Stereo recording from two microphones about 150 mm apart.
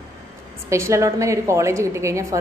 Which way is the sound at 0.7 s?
20° right (ahead or behind).